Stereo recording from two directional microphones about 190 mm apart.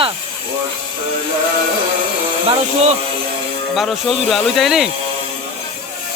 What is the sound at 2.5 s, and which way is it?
Speech, 35° right (ahead or behind).